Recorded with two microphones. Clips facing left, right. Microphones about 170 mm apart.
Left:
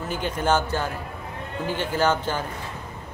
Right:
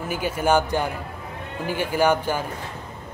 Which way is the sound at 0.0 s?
10° right (ahead or behind).